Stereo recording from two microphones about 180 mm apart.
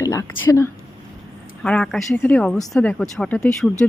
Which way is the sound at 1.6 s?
5° left (ahead or behind).